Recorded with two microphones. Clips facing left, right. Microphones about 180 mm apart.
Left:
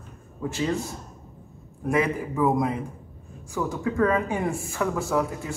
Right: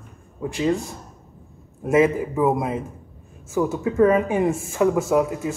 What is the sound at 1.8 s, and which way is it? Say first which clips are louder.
Speech: right 6 dB; 20° right (ahead or behind).